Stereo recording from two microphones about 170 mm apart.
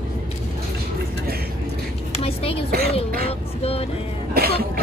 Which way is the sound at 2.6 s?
65° right (ahead or behind).